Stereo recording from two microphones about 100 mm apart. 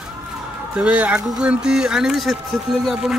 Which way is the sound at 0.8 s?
15° right (ahead or behind).